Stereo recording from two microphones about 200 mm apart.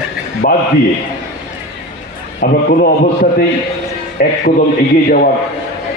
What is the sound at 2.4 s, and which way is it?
Speech, 45° left (ahead or behind).